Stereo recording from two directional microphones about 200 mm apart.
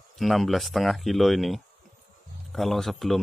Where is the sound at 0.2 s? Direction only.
Centre (ahead or behind).